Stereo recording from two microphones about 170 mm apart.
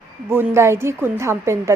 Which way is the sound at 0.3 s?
15° right (ahead or behind).